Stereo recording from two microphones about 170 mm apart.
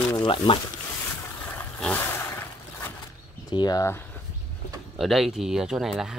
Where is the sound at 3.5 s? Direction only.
25° left (ahead or behind).